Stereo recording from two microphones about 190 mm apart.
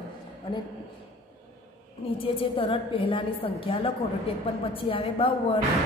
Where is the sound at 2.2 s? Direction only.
30° left (ahead or behind).